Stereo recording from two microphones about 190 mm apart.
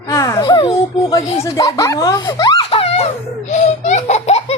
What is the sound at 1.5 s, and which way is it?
A child's voice, 20° left (ahead or behind).